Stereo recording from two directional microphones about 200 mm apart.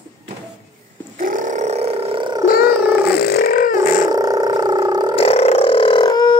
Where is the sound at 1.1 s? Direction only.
40° right (ahead or behind); by 2.4 s 25° right (ahead or behind).